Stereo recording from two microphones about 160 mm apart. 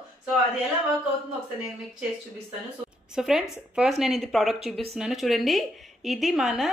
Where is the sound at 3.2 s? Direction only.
5° right (ahead or behind).